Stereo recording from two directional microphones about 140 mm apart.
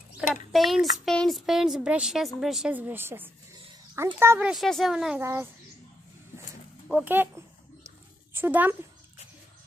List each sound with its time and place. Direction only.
0.3 s a child's voice: centre (ahead or behind); by 4.5 s 20° right (ahead or behind)
4.5 s speech: centre (ahead or behind)
5.2 s a child's voice: 20° right (ahead or behind)
6.9 s speech: 10° right (ahead or behind)